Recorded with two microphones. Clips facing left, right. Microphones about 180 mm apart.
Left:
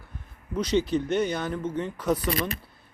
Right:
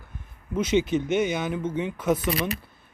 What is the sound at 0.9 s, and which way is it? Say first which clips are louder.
Speech: right 1 dB; 20° right (ahead or behind).